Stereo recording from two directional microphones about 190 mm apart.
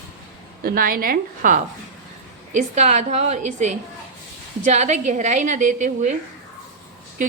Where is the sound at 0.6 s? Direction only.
50° right (ahead or behind).